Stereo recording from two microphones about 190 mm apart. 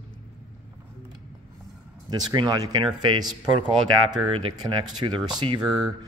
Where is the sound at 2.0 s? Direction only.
25° right (ahead or behind).